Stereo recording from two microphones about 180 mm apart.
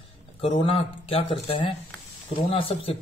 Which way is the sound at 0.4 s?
30° left (ahead or behind).